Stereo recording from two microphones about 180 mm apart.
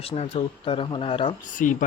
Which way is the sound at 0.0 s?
35° left (ahead or behind).